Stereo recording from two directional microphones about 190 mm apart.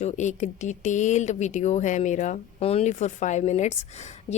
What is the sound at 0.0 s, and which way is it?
Speech, 40° left (ahead or behind).